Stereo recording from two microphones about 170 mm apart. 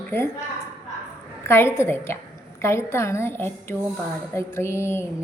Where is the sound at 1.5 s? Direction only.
15° left (ahead or behind).